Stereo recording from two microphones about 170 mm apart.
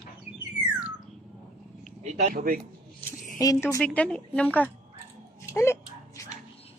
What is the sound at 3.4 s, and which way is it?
Speech, 20° left (ahead or behind).